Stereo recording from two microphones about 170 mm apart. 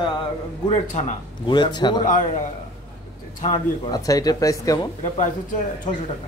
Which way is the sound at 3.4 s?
20° left (ahead or behind).